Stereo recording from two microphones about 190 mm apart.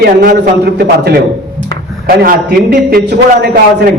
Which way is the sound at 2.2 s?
55° right (ahead or behind).